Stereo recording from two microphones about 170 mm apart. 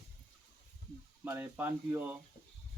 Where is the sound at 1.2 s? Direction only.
10° right (ahead or behind).